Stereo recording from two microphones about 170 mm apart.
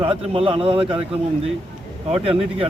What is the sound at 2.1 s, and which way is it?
Speech, 35° right (ahead or behind).